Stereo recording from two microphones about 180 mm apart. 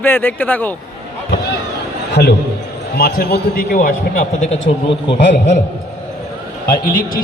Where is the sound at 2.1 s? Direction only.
65° left (ahead or behind); by 4.5 s 50° left (ahead or behind).